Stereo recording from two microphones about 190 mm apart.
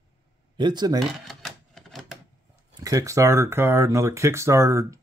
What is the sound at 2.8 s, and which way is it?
Speech, 15° right (ahead or behind).